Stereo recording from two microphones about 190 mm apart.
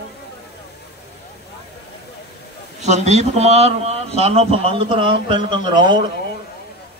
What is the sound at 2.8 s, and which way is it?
A man's voice, 35° right (ahead or behind).